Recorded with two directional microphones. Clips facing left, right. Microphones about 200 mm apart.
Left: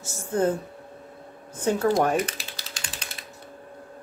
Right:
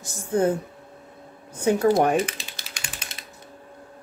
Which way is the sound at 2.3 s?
20° right (ahead or behind).